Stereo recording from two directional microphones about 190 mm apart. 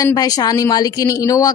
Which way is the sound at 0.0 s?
20° left (ahead or behind).